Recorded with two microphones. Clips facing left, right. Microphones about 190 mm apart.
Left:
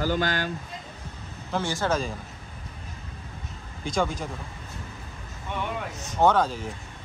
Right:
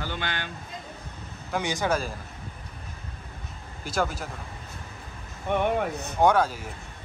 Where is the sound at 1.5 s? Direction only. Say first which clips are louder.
Even; 15° right (ahead or behind).